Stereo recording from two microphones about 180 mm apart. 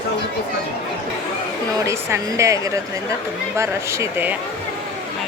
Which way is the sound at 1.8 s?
15° right (ahead or behind).